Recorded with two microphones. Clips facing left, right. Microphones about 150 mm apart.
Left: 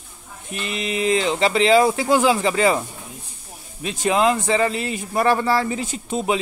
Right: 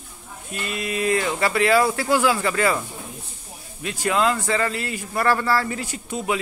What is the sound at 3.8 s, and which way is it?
Speech, 20° left (ahead or behind).